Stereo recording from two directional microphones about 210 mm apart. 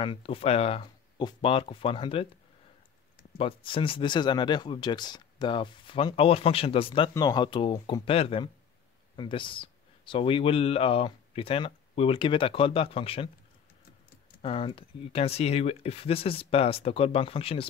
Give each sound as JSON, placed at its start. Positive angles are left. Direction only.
{"t": 0.0, "sound": "speech", "side_deg": 25}
{"t": 3.3, "sound": "speech", "side_deg": 25}
{"t": 14.4, "sound": "speech", "side_deg": 25}